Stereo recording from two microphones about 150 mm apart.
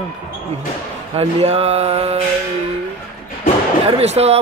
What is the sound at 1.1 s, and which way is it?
Speech, 45° right (ahead or behind).